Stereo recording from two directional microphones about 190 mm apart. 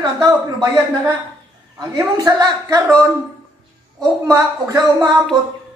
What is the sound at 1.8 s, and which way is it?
A woman's voice, 20° right (ahead or behind).